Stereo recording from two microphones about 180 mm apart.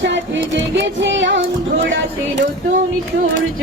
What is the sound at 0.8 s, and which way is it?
Music, 90° right.